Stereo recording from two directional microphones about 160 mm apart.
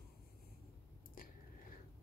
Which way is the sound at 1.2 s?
60° left (ahead or behind).